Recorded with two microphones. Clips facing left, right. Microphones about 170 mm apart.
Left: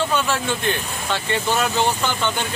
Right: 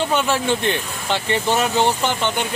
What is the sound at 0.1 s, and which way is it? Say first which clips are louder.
Speech: right 3 dB; 20° right (ahead or behind).